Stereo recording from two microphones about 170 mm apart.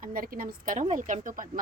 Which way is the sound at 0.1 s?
55° right (ahead or behind).